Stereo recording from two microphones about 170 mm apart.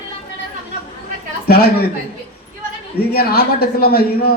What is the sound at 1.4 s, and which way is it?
Speech, 65° left (ahead or behind).